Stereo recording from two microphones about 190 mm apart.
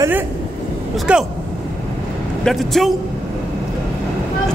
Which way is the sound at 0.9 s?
5° right (ahead or behind).